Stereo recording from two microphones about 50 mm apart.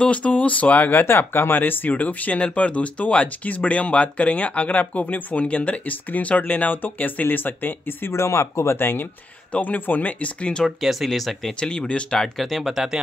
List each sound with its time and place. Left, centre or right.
0.0 s speech: left
8.1 s speech: left
8.8 s speech: left
9.5 s speech: left
10.6 s speech: centre
11.6 s speech: centre
12.4 s speech: centre